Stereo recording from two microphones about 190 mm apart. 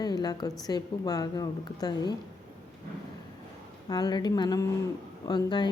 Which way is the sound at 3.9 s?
20° left (ahead or behind).